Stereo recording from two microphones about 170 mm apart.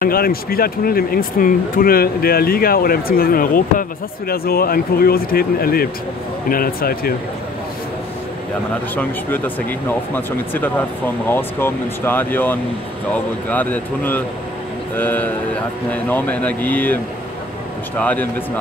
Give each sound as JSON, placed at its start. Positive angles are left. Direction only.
{"t": 0.0, "sound": "speech", "side_deg": 60}
{"t": 8.9, "sound": "speech", "side_deg": 10}